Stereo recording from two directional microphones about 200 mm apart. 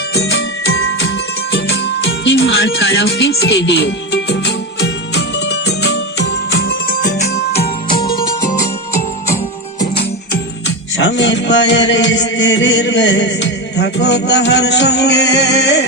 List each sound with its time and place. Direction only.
0.2 s music: 60° left (ahead or behind)
10.9 s music: 65° left (ahead or behind)